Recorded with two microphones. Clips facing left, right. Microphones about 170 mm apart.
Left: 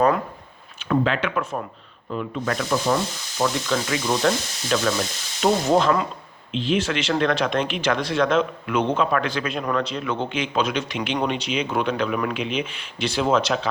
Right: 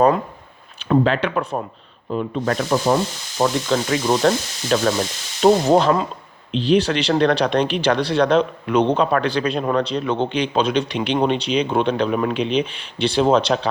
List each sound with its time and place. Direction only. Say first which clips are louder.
0.9 s speech: right 4 dB; 35° right (ahead or behind)